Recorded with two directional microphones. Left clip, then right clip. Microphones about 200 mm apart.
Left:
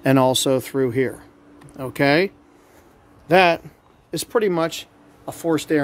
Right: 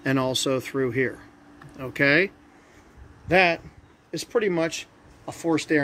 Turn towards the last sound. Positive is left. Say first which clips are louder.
# left 3 dB
turn(degrees=25)  # may be behind; listen again after turning